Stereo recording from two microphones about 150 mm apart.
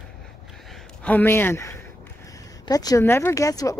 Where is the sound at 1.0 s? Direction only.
10° left (ahead or behind).